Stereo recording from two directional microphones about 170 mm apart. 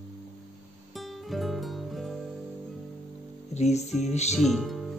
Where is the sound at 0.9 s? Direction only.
Centre (ahead or behind).